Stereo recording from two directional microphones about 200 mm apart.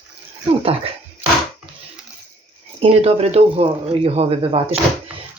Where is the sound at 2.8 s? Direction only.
30° right (ahead or behind).